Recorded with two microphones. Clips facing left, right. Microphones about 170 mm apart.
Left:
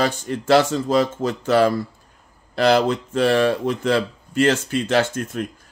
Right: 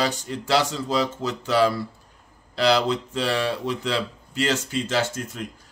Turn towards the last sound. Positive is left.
turn(degrees=60)  # may be behind; listen again after turning